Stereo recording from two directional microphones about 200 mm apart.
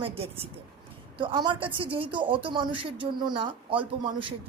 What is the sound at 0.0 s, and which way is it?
Speech, 30° right (ahead or behind).